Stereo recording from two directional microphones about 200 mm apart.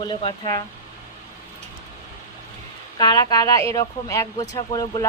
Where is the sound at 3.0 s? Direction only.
20° left (ahead or behind).